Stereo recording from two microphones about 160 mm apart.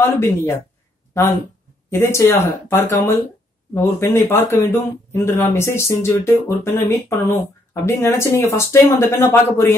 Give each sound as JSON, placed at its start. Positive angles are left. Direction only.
{"t": 0.0, "sound": "speech", "side_deg": 15}
{"t": 1.9, "sound": "speech", "side_deg": 15}